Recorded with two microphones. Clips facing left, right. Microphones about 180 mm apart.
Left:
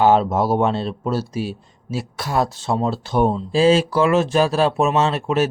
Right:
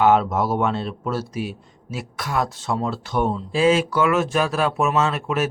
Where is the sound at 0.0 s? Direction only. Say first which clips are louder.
Left 2 dB; 30° left (ahead or behind).